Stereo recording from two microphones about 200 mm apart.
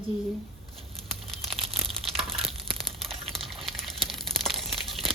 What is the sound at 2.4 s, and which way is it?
Crumpling, centre (ahead or behind).